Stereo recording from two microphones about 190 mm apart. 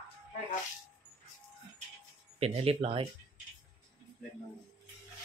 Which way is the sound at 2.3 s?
30° right (ahead or behind).